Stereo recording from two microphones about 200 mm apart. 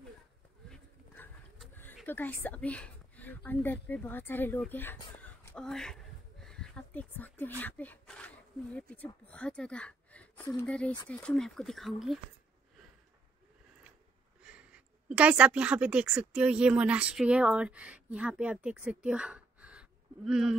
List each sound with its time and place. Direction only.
0.7 s bird: 5° left (ahead or behind)
2.0 s speech: 10° left (ahead or behind)
14.4 s a woman's voice: 5° right (ahead or behind)